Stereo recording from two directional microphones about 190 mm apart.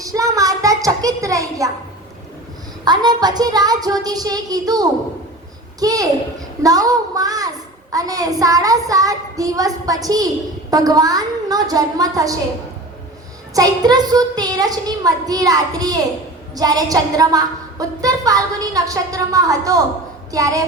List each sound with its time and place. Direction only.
0.0 s a sound: 15° right (ahead or behind)
2.8 s a child's voice: 20° right (ahead or behind)
13.5 s a child's voice: 20° right (ahead or behind)